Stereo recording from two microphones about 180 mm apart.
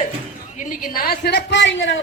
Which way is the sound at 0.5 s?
45° left (ahead or behind).